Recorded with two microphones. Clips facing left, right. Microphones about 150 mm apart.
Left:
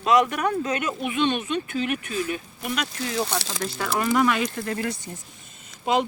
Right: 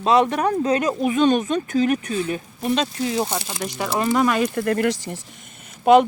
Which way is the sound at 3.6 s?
15° right (ahead or behind).